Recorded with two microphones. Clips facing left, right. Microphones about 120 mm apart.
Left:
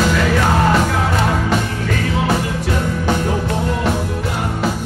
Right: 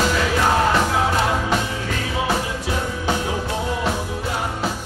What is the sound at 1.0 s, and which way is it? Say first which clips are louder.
Music: left 2 dB; 55° left (ahead or behind).